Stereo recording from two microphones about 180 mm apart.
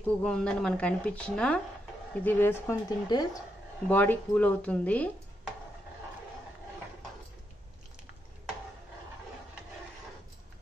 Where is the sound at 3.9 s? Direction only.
10° left (ahead or behind).